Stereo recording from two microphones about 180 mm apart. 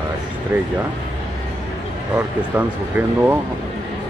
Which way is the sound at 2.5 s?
10° right (ahead or behind).